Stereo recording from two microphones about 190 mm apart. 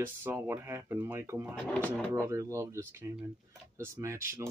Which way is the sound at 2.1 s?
15° right (ahead or behind).